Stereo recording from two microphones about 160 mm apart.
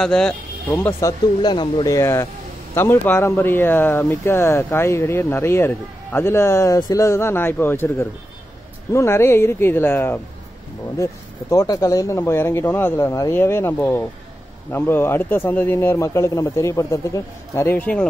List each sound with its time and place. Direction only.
0.0 s speech: 5° left (ahead or behind)
0.7 s speech: 15° left (ahead or behind)
1.4 s speech: 30° left (ahead or behind); by 10.2 s 15° left (ahead or behind)
11.5 s speech: 20° left (ahead or behind)